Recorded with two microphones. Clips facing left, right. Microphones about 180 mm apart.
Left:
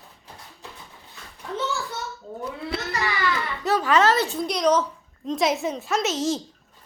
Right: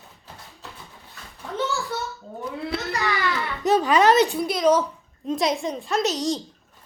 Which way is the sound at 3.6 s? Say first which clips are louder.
Right 2 dB; 20° right (ahead or behind).